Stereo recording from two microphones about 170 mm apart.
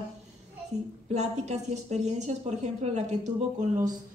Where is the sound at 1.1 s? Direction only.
40° right (ahead or behind).